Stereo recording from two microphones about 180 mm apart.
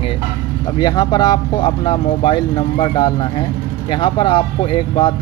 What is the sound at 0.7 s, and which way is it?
Speech, 25° left (ahead or behind).